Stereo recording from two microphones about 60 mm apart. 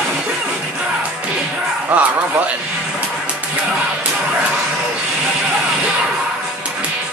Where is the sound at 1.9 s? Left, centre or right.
Right.